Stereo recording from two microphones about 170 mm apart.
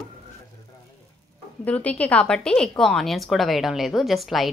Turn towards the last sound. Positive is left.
turn(degrees=0)  # may be behind; listen again after turning